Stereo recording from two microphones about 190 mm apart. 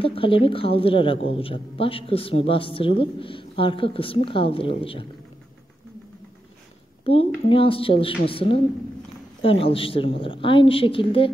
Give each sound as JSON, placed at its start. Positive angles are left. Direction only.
{"t": 0.0, "sound": "a woman's voice", "side_deg": 30}
{"t": 7.1, "sound": "a woman's voice", "side_deg": 30}